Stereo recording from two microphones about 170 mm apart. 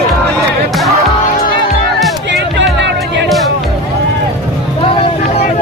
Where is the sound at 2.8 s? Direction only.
90° right.